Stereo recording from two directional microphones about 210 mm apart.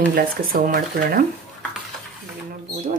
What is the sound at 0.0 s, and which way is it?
Speech, 45° right (ahead or behind).